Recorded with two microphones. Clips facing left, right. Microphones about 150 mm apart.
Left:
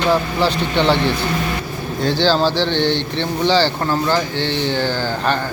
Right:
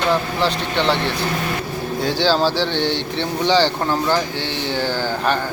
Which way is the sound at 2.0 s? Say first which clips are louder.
Left 2 dB; 10° right (ahead or behind).